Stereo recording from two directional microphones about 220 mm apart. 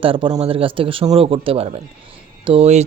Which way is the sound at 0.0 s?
25° right (ahead or behind).